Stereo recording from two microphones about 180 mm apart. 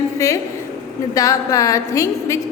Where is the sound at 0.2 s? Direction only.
15° left (ahead or behind).